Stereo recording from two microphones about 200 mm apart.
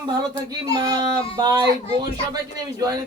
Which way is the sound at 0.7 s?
15° right (ahead or behind).